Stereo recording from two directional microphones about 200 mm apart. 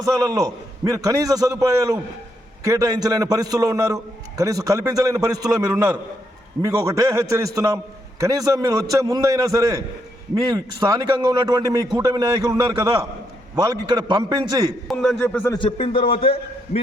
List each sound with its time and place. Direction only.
0.2 s a man's voice: 20° right (ahead or behind)
14.8 s a man's voice: 5° left (ahead or behind)
15.5 s speech: 25° left (ahead or behind)